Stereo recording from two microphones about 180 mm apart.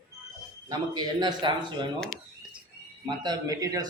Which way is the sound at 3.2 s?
20° right (ahead or behind).